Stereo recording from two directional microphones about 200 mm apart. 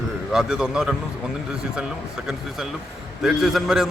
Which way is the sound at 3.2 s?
Centre (ahead or behind).